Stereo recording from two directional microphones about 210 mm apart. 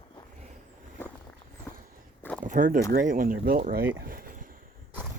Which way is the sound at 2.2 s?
5° left (ahead or behind).